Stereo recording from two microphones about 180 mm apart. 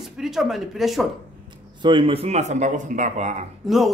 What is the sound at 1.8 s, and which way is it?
Speech, 30° right (ahead or behind).